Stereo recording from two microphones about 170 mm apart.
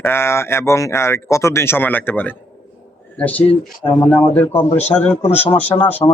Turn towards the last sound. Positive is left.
turn(degrees=30)  # may be behind; listen again after turning